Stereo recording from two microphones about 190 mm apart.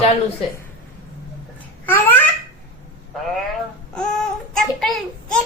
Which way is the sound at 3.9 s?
5° left (ahead or behind).